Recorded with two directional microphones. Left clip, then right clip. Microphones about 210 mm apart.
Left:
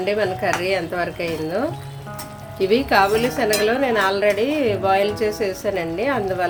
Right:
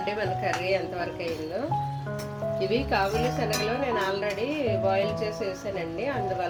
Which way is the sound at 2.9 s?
25° left (ahead or behind).